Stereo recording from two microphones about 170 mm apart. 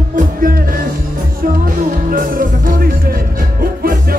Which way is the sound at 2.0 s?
55° right (ahead or behind).